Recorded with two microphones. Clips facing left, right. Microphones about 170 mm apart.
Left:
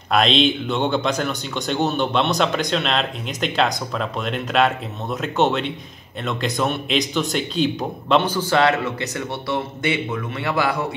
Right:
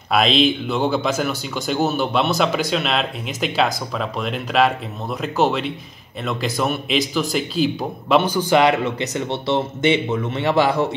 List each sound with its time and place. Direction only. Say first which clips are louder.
0.1 s speech: right 1 dB; centre (ahead or behind); by 11.0 s 25° right (ahead or behind)